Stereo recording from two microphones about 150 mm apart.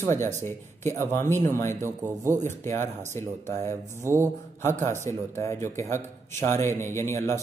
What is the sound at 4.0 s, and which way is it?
Speech, 20° right (ahead or behind).